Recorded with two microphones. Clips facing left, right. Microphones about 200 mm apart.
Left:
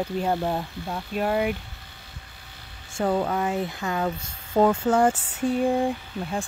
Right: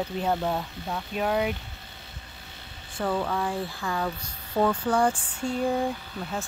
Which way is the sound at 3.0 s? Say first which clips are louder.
Left 4 dB; 25° left (ahead or behind).